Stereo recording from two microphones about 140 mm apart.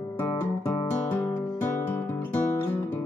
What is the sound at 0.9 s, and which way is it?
Music, 15° left (ahead or behind).